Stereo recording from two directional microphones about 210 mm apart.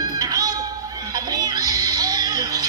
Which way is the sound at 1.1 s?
20° right (ahead or behind).